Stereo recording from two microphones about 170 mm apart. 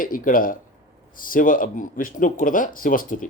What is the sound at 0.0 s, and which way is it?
A man's voice, 55° left (ahead or behind).